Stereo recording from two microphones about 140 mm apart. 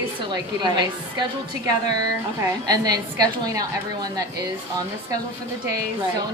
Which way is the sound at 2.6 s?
25° right (ahead or behind).